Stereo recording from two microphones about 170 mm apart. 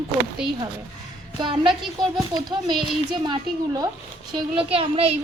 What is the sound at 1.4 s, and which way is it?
A woman's voice, 30° right (ahead or behind).